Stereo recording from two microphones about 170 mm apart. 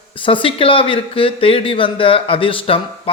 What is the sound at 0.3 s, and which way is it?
Speech, 30° left (ahead or behind).